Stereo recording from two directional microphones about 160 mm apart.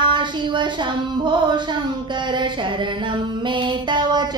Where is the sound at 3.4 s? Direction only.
30° right (ahead or behind).